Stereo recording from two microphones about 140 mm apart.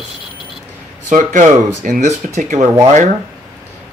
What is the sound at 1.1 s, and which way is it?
Speech, 65° right (ahead or behind).